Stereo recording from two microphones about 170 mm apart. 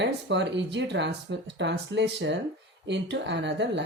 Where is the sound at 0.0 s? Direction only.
90° right.